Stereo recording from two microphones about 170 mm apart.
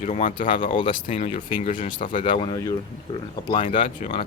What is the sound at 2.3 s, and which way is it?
Speech, 30° left (ahead or behind).